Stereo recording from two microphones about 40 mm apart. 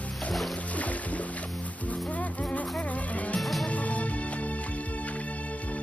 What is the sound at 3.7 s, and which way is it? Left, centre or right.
Music, left.